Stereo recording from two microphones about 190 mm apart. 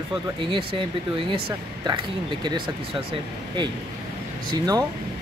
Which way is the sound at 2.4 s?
25° right (ahead or behind).